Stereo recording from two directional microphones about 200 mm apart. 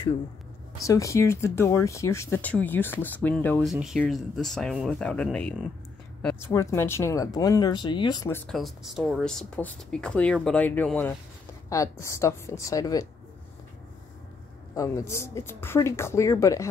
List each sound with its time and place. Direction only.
0.8 s speech: 15° left (ahead or behind)
8.5 s speech: centre (ahead or behind); by 13.1 s 15° left (ahead or behind)
14.7 s speech: 15° left (ahead or behind)